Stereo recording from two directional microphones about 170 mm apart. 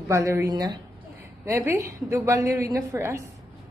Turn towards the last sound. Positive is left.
turn(degrees=-15)  # may be behind; listen again after turning